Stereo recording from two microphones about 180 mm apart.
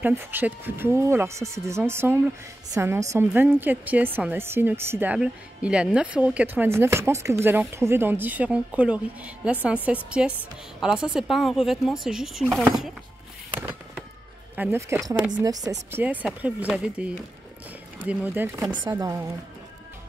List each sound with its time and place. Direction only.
0.0 s a woman's voice: 10° right (ahead or behind)
14.5 s a woman's voice: 10° right (ahead or behind)